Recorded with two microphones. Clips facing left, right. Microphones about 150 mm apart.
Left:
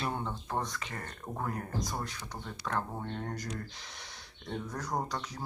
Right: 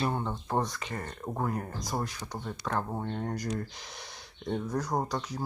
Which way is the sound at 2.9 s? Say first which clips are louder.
Right 4 dB; 15° right (ahead or behind).